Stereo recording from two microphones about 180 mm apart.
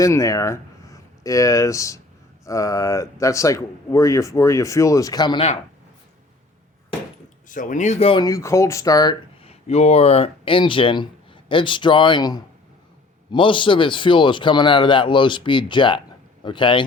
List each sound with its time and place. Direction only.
0.0 s speech: 15° left (ahead or behind)
7.4 s speech: 45° left (ahead or behind)
8.2 s a man's voice: 20° left (ahead or behind)
9.4 s a man's voice: 35° left (ahead or behind)